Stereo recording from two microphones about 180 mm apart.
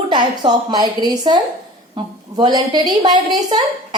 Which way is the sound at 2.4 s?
25° right (ahead or behind).